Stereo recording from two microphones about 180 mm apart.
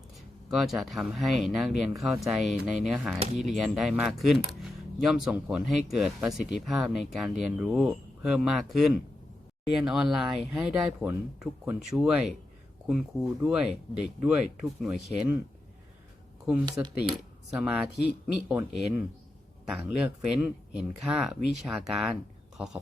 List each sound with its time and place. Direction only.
0.5 s speech: centre (ahead or behind)
16.6 s speech: 25° right (ahead or behind)
17.5 s speech: 5° right (ahead or behind)